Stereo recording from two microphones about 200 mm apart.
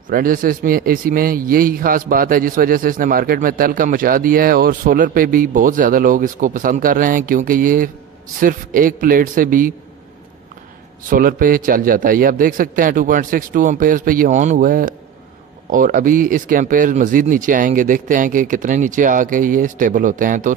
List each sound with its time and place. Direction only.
0.1 s a man's voice: 45° right (ahead or behind)
11.1 s a man's voice: 45° right (ahead or behind)